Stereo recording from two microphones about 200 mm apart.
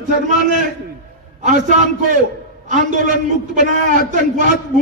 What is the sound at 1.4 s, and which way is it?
A man's voice, 40° right (ahead or behind).